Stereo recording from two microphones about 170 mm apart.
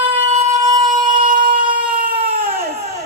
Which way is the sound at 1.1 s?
50° right (ahead or behind).